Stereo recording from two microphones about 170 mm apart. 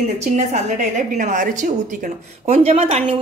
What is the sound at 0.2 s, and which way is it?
A woman's voice, 45° right (ahead or behind).